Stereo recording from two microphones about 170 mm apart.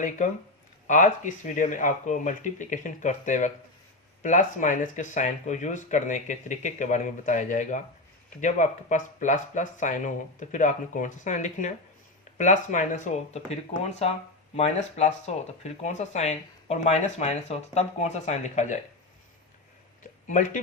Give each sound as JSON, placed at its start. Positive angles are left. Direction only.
{"t": 0.9, "sound": "speech", "side_deg": 45}
{"t": 14.5, "sound": "speech", "side_deg": 40}
{"t": 20.2, "sound": "speech", "side_deg": 45}